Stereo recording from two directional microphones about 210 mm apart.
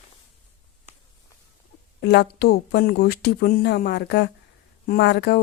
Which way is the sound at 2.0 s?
55° left (ahead or behind).